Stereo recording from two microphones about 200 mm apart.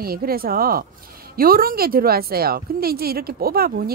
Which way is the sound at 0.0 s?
50° right (ahead or behind).